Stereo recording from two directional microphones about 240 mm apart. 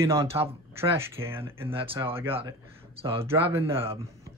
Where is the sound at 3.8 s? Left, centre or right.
Right.